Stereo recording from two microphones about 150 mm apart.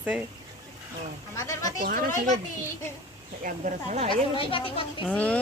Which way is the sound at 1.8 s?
70° right (ahead or behind).